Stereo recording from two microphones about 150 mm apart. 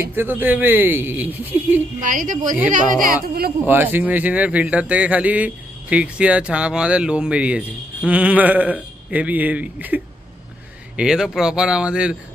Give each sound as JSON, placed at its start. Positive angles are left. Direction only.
{"t": 0.0, "sound": "a man's voice", "side_deg": -15}
{"t": 2.0, "sound": "a woman's voice", "side_deg": -60}
{"t": 2.7, "sound": "speech", "side_deg": -70}
{"t": 3.6, "sound": "a man's voice", "side_deg": -15}